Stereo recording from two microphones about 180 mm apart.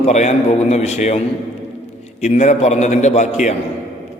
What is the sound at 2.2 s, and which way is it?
A man's voice, 40° left (ahead or behind).